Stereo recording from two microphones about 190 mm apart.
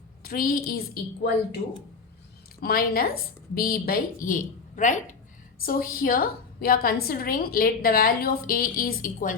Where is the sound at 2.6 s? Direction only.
50° left (ahead or behind).